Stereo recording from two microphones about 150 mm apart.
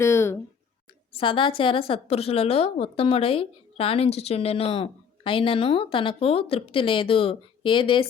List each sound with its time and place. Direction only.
0.0 s speech: 15° left (ahead or behind)
1.1 s a woman's voice: 35° left (ahead or behind)